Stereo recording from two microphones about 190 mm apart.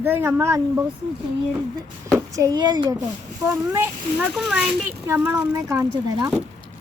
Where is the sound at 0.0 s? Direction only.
10° right (ahead or behind).